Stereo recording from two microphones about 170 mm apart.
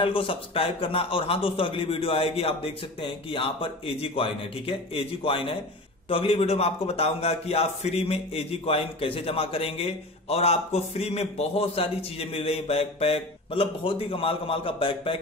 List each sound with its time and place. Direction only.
0.0 s a man's voice: 30° left (ahead or behind)